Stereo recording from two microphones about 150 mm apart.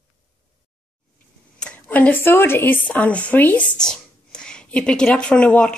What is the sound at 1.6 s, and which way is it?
A woman's voice, 10° left (ahead or behind).